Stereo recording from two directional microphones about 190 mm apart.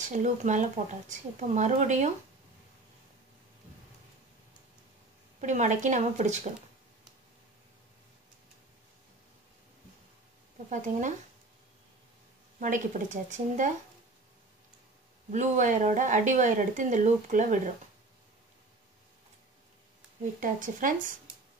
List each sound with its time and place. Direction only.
0.0 s speech: 40° right (ahead or behind)
5.4 s speech: 40° right (ahead or behind)
10.7 s speech: 40° right (ahead or behind)
12.5 s speech: 45° right (ahead or behind)
15.3 s speech: 40° right (ahead or behind)
20.3 s speech: 45° right (ahead or behind)